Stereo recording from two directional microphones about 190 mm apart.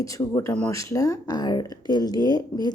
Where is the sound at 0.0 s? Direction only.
15° left (ahead or behind).